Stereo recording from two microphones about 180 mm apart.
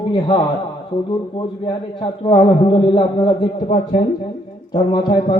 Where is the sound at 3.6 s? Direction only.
40° left (ahead or behind).